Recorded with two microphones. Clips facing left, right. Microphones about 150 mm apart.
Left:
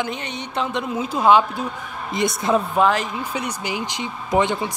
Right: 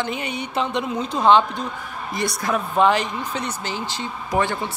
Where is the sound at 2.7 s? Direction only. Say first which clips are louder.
Right 1 dB; centre (ahead or behind).